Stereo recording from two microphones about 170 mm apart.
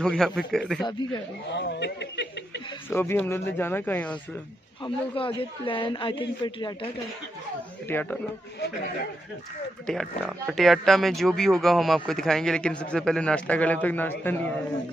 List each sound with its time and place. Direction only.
0.0 s speech: 5° left (ahead or behind)
0.8 s speech: 25° left (ahead or behind)
1.5 s speech: 90° left
2.9 s speech: 10° left (ahead or behind)
4.8 s a man's voice: 30° left (ahead or behind)
7.9 s speech: 10° left (ahead or behind)
9.8 s speech: 5° left (ahead or behind)